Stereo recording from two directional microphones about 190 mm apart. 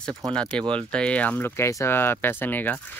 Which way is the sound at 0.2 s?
5° left (ahead or behind).